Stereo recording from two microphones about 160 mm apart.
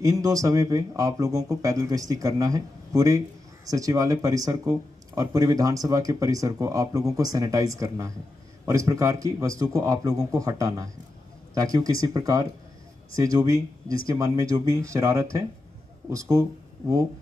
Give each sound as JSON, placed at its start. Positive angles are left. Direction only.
{"t": 0.0, "sound": "speech", "side_deg": -20}